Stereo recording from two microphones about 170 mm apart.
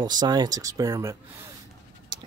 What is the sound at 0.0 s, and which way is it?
Speech, 25° right (ahead or behind).